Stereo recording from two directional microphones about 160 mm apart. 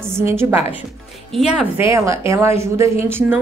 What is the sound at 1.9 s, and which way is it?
A woman's voice, 20° right (ahead or behind).